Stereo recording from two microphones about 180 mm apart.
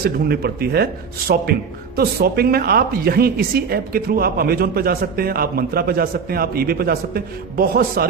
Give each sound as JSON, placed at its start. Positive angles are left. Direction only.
{"t": 0.0, "sound": "a woman's voice", "side_deg": -60}
{"t": 2.0, "sound": "a woman's voice", "side_deg": -60}